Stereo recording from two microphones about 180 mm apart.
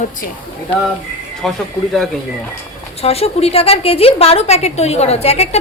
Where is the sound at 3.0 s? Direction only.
35° left (ahead or behind).